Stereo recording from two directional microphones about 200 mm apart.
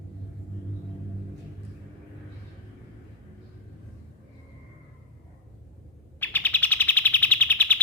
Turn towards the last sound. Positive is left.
turn(degrees=10)  # may be behind; listen again after turning